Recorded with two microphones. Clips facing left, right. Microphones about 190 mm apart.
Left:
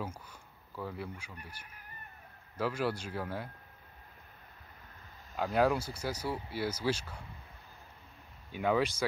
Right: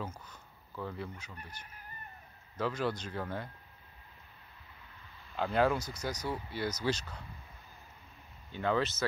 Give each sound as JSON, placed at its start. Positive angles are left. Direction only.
{"t": 0.0, "sound": "speech", "side_deg": 10}
{"t": 5.3, "sound": "speech", "side_deg": 5}
{"t": 8.5, "sound": "speech", "side_deg": 10}